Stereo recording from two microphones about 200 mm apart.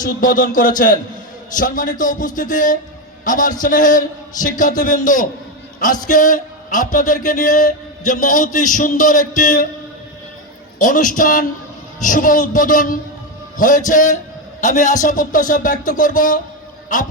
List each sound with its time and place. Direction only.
0.0 s a man's voice: 45° left (ahead or behind)
10.8 s speech: 40° left (ahead or behind)